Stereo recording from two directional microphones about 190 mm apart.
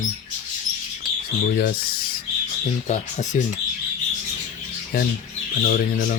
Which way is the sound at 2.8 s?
40° left (ahead or behind).